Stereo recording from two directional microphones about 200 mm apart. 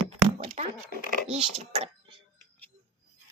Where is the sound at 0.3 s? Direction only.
35° right (ahead or behind).